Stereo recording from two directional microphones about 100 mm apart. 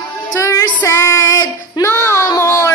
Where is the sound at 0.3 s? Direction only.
30° left (ahead or behind).